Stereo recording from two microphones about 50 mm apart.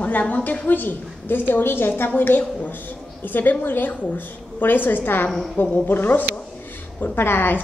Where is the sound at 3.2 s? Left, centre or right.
Left.